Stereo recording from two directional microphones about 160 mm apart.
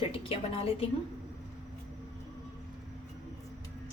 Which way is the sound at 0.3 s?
35° left (ahead or behind).